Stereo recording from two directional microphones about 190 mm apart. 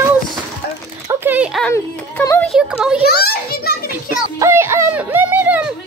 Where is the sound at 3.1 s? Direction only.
55° left (ahead or behind).